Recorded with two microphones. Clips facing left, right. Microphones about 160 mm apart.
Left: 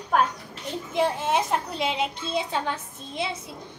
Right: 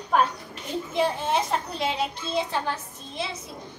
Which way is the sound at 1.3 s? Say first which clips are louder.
Left 1 dB; 15° left (ahead or behind).